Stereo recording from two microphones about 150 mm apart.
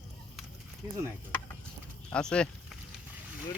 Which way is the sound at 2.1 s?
5° left (ahead or behind).